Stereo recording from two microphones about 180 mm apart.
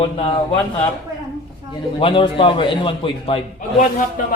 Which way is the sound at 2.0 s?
30° left (ahead or behind).